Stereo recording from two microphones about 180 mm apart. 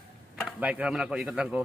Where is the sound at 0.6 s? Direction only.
5° right (ahead or behind).